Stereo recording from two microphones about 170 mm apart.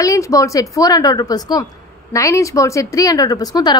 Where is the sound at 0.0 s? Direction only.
20° left (ahead or behind).